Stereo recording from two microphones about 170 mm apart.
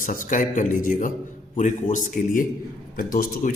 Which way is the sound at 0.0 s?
50° left (ahead or behind).